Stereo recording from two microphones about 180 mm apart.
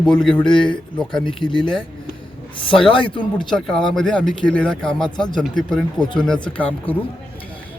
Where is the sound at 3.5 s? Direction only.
5° left (ahead or behind).